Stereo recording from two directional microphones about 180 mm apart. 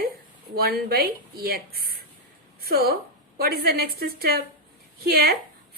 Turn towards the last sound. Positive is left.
turn(degrees=-60)  # may be behind; listen again after turning